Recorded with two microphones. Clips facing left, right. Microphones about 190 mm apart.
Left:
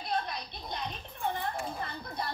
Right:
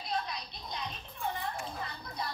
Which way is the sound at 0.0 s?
55° left (ahead or behind).